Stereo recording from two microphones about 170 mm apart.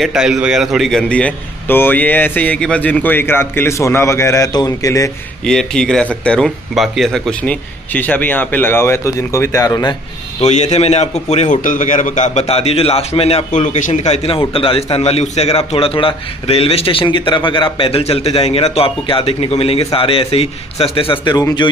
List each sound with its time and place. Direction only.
0.0 s a man's voice: 5° right (ahead or behind); by 5.1 s 20° left (ahead or behind)
5.4 s a man's voice: 5° left (ahead or behind); by 9.9 s 20° left (ahead or behind)
10.4 s a man's voice: 40° left (ahead or behind); by 21.6 s 25° left (ahead or behind)